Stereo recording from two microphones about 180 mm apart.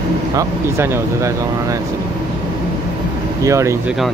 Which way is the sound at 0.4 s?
15° right (ahead or behind).